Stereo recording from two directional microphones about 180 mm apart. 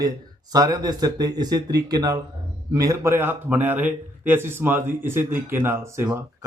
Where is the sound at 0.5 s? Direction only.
20° right (ahead or behind).